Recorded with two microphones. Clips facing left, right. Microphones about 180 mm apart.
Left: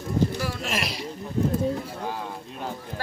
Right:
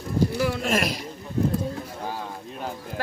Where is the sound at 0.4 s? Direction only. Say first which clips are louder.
Right 5 dB; 55° right (ahead or behind).